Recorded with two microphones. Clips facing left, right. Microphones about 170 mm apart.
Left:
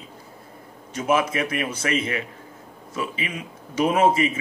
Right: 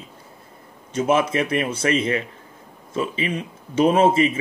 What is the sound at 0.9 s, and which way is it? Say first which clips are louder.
Speech: right 3 dB; 30° right (ahead or behind).